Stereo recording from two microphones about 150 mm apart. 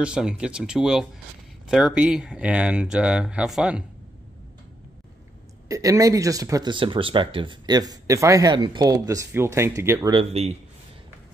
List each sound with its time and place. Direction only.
0.0 s speech: 5° right (ahead or behind)
5.7 s speech: 20° right (ahead or behind)
10.1 s a man's voice: 45° right (ahead or behind)